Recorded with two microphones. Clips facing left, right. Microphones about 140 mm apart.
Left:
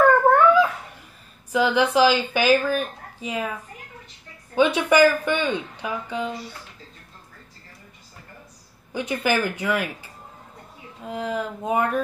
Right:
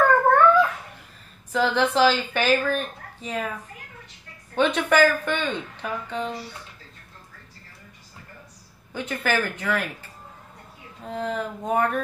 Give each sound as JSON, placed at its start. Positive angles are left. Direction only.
{"t": 0.0, "sound": "dog", "side_deg": 10}
{"t": 1.5, "sound": "speech", "side_deg": 10}
{"t": 4.6, "sound": "speech", "side_deg": 10}
{"t": 8.9, "sound": "speech", "side_deg": 10}
{"t": 11.1, "sound": "speech", "side_deg": 10}